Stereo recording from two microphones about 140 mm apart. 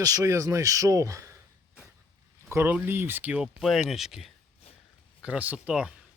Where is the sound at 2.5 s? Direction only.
15° right (ahead or behind).